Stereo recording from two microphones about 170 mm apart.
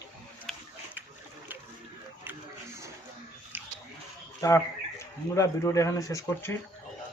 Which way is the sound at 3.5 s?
10° right (ahead or behind).